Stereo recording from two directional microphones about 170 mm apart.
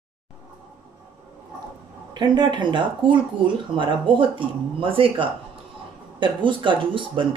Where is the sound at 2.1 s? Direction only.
25° right (ahead or behind).